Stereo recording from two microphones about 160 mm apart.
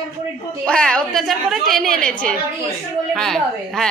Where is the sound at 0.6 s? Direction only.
5° left (ahead or behind).